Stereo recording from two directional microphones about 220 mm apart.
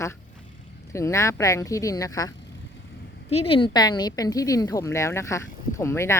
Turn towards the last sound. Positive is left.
turn(degrees=10)  # may be behind; listen again after turning